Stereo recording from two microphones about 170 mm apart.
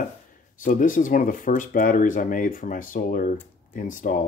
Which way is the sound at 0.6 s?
50° left (ahead or behind).